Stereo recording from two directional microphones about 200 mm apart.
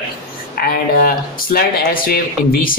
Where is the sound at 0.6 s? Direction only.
50° left (ahead or behind).